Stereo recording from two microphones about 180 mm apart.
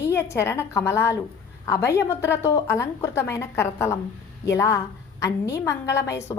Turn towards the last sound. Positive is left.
turn(degrees=15)  # may be behind; listen again after turning